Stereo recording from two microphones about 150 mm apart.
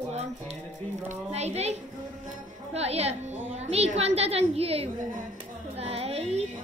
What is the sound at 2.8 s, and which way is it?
A woman's voice, 45° right (ahead or behind).